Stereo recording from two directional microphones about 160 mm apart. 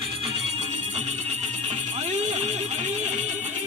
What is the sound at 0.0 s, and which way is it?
Music, 35° right (ahead or behind).